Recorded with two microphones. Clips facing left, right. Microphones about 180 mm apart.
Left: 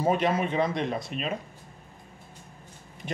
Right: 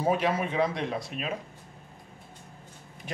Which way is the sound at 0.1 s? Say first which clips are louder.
Left 2 dB; 5° right (ahead or behind).